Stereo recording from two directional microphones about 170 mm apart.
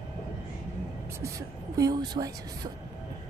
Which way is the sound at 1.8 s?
20° right (ahead or behind).